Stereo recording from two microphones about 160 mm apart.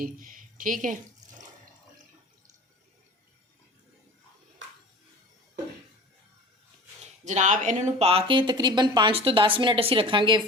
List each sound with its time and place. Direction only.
0.0 s speech: 60° right (ahead or behind)
7.3 s speech: 50° right (ahead or behind); by 10.4 s 30° right (ahead or behind)